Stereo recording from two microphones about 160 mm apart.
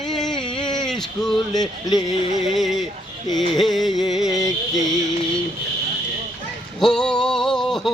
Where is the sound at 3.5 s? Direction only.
Centre (ahead or behind).